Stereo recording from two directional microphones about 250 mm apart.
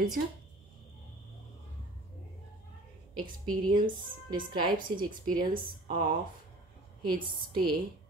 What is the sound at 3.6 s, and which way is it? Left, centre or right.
Speech, centre.